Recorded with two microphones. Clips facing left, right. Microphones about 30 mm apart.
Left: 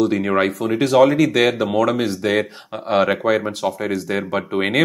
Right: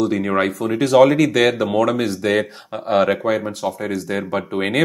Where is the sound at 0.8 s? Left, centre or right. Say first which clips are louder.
Right 1 dB; centre.